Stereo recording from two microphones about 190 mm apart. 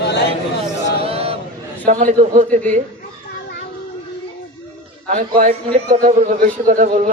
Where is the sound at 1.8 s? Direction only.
40° right (ahead or behind).